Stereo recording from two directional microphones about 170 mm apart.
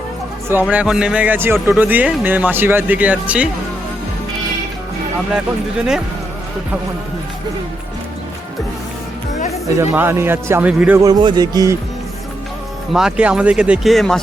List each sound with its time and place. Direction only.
0.7 s speech: 5° right (ahead or behind)
9.6 s speech: 15° right (ahead or behind)
11.0 s a man's voice: 25° right (ahead or behind)
12.9 s speech: 5° right (ahead or behind)